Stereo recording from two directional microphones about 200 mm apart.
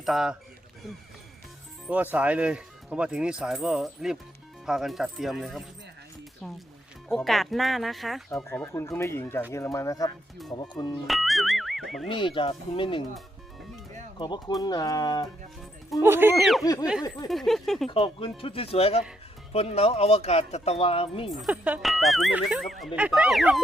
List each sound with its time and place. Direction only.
0.0 s speech: centre (ahead or behind)
1.9 s speech: 10° right (ahead or behind)
8.4 s speech: 15° left (ahead or behind)
11.0 s speech: centre (ahead or behind)
12.0 s speech: 25° left (ahead or behind)
14.2 s speech: 20° left (ahead or behind)
16.0 s speech: 10° right (ahead or behind)
16.4 s speech: centre (ahead or behind)
16.6 s speech: 15° left (ahead or behind)
17.2 s speech: centre (ahead or behind)
17.8 s speech: 25° left (ahead or behind)
21.2 s speech: centre (ahead or behind)